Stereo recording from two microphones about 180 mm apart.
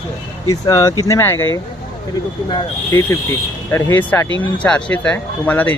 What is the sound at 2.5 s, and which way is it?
Speech, 15° left (ahead or behind).